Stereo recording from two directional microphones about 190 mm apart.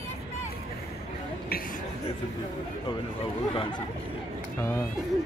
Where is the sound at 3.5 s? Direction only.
25° left (ahead or behind).